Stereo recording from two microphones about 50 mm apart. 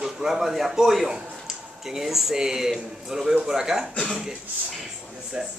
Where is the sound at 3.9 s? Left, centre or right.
Centre.